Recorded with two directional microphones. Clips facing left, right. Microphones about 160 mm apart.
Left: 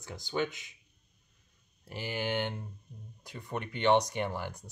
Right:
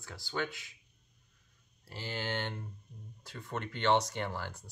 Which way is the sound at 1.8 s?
15° left (ahead or behind).